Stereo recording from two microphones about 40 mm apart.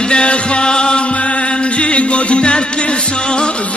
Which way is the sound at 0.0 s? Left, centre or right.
Left.